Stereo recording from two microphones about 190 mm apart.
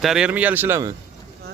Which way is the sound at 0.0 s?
5° right (ahead or behind).